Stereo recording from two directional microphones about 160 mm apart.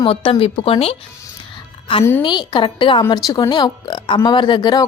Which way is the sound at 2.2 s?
30° left (ahead or behind).